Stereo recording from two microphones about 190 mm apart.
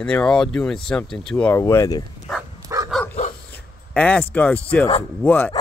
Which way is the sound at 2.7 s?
15° right (ahead or behind).